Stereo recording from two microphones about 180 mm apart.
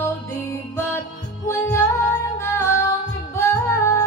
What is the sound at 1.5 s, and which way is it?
Music, 15° left (ahead or behind).